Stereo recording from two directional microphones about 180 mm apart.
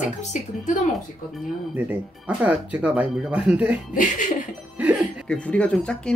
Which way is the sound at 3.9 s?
45° left (ahead or behind).